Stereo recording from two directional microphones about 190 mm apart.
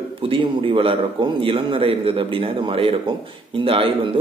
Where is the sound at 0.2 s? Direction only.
25° right (ahead or behind).